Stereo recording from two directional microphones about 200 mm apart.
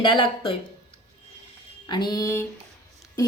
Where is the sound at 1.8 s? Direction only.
20° left (ahead or behind).